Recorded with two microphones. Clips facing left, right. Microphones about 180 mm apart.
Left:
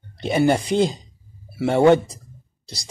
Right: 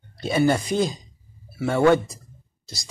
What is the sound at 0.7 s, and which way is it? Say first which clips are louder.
Speech: left 4 dB; 25° left (ahead or behind).